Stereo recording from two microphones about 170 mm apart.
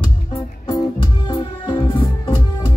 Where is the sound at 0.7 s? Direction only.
30° left (ahead or behind).